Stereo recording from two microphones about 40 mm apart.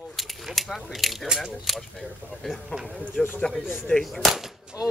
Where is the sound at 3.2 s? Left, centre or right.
Left.